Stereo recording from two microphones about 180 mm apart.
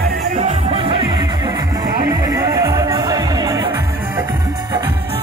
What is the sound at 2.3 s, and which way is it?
Music, 20° right (ahead or behind).